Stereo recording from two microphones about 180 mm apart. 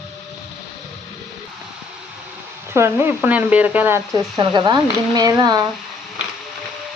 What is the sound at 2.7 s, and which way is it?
Speech, 15° right (ahead or behind).